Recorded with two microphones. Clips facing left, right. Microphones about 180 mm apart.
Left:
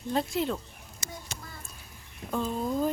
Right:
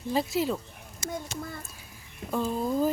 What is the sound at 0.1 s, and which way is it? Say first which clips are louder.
Speech: right 2 dB; 5° right (ahead or behind).